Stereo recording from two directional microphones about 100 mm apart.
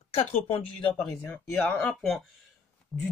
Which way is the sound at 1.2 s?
10° left (ahead or behind).